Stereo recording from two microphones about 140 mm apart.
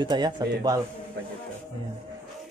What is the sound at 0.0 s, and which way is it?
Speech, 35° right (ahead or behind).